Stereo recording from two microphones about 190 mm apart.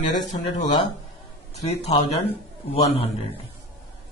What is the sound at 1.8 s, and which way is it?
Speech, 35° left (ahead or behind).